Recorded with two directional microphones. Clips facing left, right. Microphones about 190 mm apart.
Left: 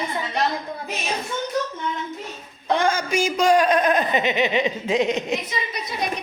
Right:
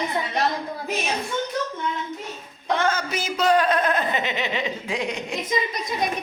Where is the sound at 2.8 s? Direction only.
10° left (ahead or behind).